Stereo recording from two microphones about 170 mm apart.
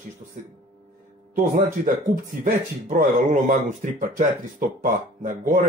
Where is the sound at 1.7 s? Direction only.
50° right (ahead or behind).